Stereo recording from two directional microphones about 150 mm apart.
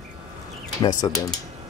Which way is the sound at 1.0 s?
30° left (ahead or behind).